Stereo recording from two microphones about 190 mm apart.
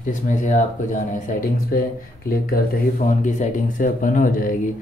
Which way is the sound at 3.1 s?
40° left (ahead or behind).